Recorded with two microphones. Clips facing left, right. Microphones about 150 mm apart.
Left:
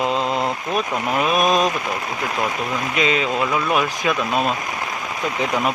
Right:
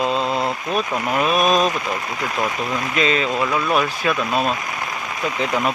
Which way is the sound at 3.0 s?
15° left (ahead or behind).